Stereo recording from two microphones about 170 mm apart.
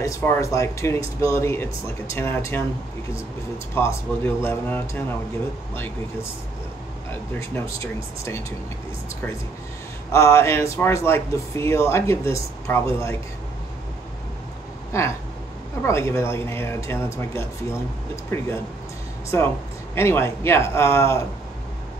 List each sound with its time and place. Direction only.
0.0 s speech: 20° left (ahead or behind)
3.7 s speech: 15° left (ahead or behind)
7.3 s speech: 15° left (ahead or behind)
10.1 s speech: 15° left (ahead or behind)
14.9 s a sound: 15° left (ahead or behind)
15.8 s speech: 15° left (ahead or behind)
19.3 s speech: 15° left (ahead or behind)